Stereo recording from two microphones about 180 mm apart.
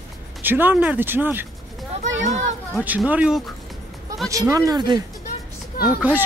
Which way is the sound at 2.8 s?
10° right (ahead or behind).